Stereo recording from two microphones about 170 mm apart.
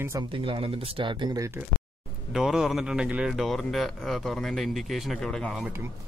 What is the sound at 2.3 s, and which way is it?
Speech, centre (ahead or behind).